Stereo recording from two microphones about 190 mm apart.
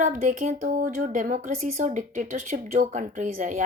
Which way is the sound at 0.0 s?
40° right (ahead or behind).